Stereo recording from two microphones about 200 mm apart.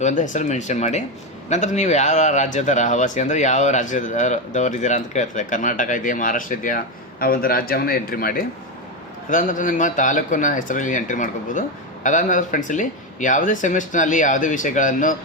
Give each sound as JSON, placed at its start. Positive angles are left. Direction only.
{"t": 0.0, "sound": "a man's voice", "side_deg": 40}